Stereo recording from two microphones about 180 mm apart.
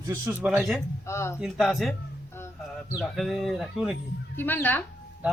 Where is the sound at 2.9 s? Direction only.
Centre (ahead or behind).